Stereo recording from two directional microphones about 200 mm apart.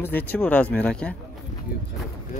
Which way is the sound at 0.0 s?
10° left (ahead or behind).